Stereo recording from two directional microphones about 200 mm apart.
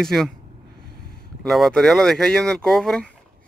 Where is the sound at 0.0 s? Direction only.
Centre (ahead or behind).